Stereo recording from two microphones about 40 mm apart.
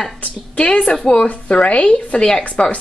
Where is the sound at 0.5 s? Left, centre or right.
Left.